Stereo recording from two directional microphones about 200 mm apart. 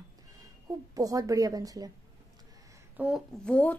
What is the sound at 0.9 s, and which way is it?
Speech, 15° right (ahead or behind).